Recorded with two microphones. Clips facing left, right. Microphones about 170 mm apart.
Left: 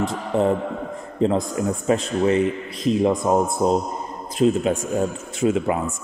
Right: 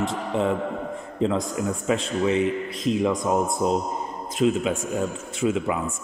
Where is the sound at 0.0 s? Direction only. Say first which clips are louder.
Left 3 dB; 40° left (ahead or behind).